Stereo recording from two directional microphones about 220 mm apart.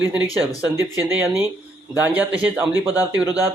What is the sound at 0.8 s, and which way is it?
Speech, 10° right (ahead or behind).